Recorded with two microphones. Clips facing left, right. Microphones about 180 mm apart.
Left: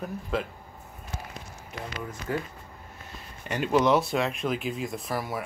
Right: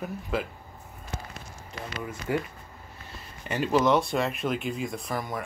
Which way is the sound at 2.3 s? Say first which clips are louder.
Right 2 dB; 15° right (ahead or behind).